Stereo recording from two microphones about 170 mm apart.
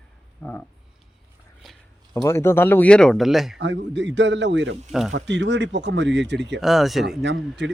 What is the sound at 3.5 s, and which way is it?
Speech, 90° right.